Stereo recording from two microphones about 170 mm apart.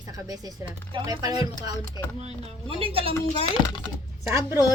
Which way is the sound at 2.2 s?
35° right (ahead or behind).